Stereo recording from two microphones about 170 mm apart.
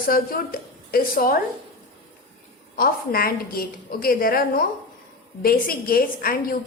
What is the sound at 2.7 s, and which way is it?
A woman's voice, 60° left (ahead or behind).